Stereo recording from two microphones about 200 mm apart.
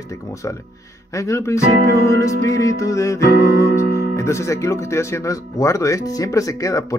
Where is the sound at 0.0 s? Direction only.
15° left (ahead or behind).